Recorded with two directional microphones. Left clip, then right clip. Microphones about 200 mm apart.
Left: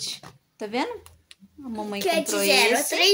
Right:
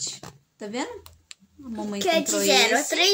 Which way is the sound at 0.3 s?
40° right (ahead or behind).